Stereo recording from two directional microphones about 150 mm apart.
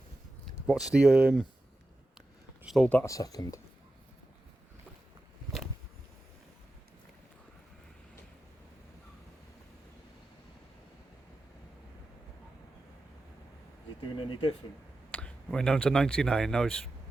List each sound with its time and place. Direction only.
0.7 s speech: 5° right (ahead or behind)
2.6 s speech: 5° left (ahead or behind)
3.0 s speech: 20° left (ahead or behind)
14.2 s a sound: 35° left (ahead or behind)
15.1 s speech: 5° left (ahead or behind)